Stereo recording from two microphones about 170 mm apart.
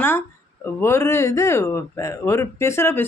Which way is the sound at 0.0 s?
15° left (ahead or behind).